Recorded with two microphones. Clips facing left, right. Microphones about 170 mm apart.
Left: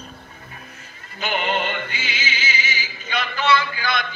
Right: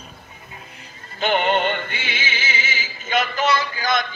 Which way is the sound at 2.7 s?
50° right (ahead or behind).